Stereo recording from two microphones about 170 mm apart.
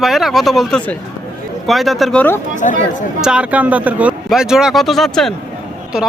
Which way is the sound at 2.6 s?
45° left (ahead or behind).